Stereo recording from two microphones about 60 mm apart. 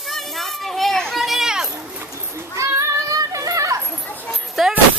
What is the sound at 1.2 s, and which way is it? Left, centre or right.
Children playing, centre.